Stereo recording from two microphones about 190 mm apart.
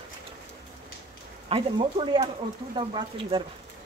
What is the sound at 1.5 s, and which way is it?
Speech, 30° right (ahead or behind).